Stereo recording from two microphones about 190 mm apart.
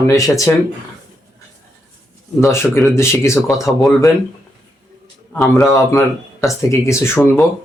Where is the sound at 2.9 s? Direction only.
15° left (ahead or behind).